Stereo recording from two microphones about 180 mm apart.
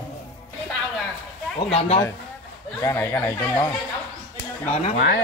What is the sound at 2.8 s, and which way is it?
Speech, 15° left (ahead or behind).